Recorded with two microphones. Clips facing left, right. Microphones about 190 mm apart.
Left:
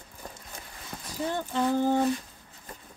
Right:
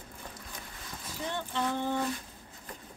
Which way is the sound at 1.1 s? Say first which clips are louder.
Left 5 dB; 40° left (ahead or behind).